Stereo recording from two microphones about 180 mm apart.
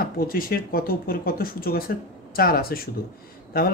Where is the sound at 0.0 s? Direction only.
55° left (ahead or behind).